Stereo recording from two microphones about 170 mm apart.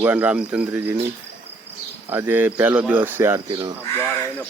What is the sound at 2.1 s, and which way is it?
Speech, 10° right (ahead or behind).